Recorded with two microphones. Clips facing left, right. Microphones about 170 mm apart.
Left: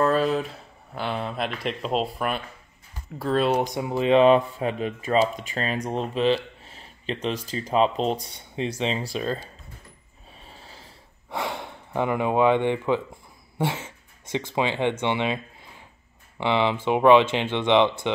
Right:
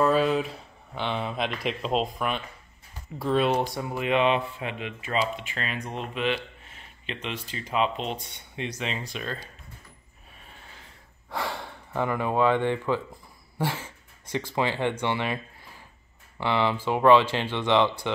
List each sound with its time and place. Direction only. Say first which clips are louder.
0.0 s speech: left 1 dB; centre (ahead or behind)
3.5 s speech: left 3 dB; 20° left (ahead or behind); by 9.5 s 35° left (ahead or behind)
10.5 s snort: left 3 dB; 35° left (ahead or behind)
11.2 s speech: left 2 dB; 20° left (ahead or behind)